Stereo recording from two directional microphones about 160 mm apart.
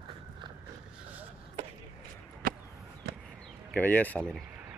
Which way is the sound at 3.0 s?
75° right (ahead or behind).